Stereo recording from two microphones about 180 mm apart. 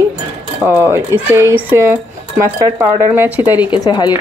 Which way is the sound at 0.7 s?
15° right (ahead or behind).